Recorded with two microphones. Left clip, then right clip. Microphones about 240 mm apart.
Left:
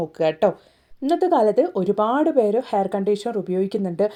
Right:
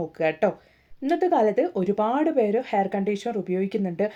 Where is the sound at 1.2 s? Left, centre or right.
Left.